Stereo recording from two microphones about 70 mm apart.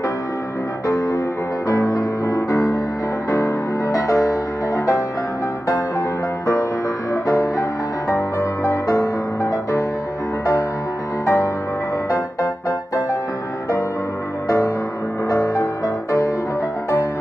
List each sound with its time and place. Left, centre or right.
0.8 s music: left
11.2 s music: left
15.2 s music: left